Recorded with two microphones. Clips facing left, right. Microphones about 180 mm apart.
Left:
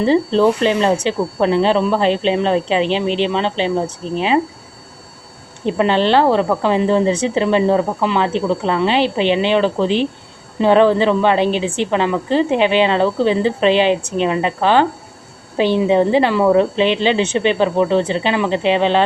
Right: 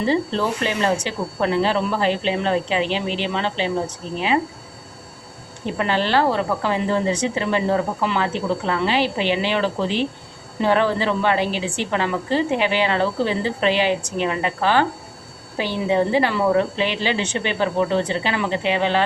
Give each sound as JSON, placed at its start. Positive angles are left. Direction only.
{"t": 0.0, "sound": "a woman's voice", "side_deg": 20}
{"t": 5.6, "sound": "a woman's voice", "side_deg": 20}